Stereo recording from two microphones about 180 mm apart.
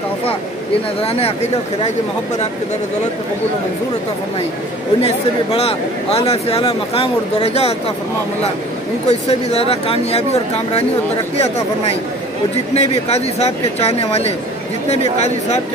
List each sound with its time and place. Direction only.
1.0 s speech: 35° left (ahead or behind)
5.0 s speech: 35° left (ahead or behind)
9.0 s speech: 35° left (ahead or behind)